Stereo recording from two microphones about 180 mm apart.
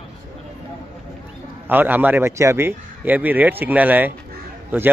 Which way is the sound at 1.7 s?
10° right (ahead or behind).